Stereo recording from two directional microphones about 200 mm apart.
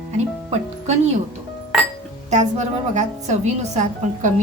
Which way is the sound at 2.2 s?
35° right (ahead or behind).